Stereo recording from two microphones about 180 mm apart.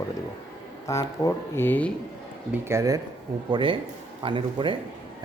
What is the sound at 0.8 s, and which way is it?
Speech, 15° left (ahead or behind).